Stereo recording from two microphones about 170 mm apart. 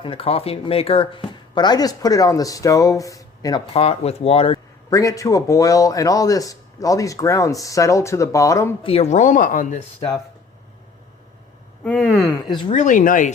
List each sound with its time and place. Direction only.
0.0 s speech: 35° left (ahead or behind)
3.8 s speech: 35° left (ahead or behind)
4.9 s speech: 20° left (ahead or behind)
8.8 s speech: 35° left (ahead or behind); by 9.8 s 50° left (ahead or behind)
11.8 s speech: 10° left (ahead or behind)
12.5 s speech: 25° left (ahead or behind)
12.7 s speech: 45° left (ahead or behind)